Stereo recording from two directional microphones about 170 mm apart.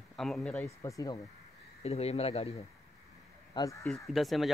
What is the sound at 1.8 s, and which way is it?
Speech, 35° left (ahead or behind).